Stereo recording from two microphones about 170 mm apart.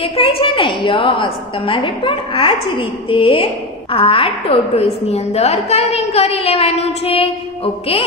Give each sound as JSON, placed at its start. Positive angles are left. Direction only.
{"t": 0.0, "sound": "a woman's voice", "side_deg": 30}